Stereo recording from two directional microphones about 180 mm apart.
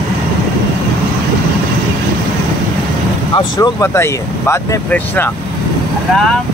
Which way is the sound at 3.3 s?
20° left (ahead or behind).